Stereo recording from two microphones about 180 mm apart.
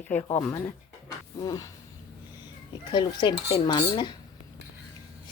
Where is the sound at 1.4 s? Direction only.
20° left (ahead or behind).